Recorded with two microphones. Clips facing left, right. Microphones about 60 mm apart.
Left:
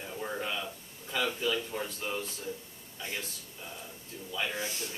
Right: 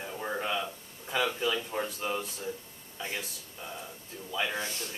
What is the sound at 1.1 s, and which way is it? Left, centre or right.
Speech, centre.